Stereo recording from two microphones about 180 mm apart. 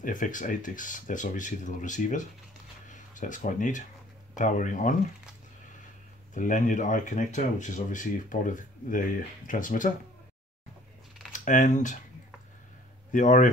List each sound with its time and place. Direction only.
0.0 s speech: 45° left (ahead or behind)
6.3 s speech: 45° left (ahead or behind)
11.3 s speech: 45° left (ahead or behind)
13.1 s speech: 45° left (ahead or behind)